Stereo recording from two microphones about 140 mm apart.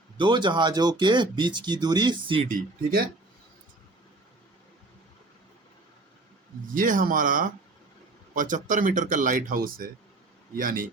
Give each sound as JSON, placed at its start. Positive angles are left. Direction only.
{"t": 0.2, "sound": "speech", "side_deg": -35}
{"t": 2.5, "sound": "speech", "side_deg": -90}
{"t": 6.7, "sound": "speech", "side_deg": -75}
{"t": 10.6, "sound": "speech", "side_deg": -80}